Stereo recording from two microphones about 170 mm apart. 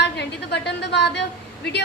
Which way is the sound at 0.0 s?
80° left.